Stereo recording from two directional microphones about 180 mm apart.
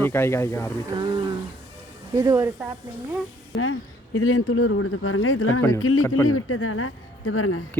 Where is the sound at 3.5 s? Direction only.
90° left.